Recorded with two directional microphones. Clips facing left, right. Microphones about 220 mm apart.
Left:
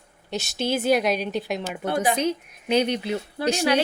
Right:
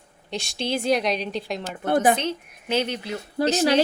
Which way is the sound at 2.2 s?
10° left (ahead or behind).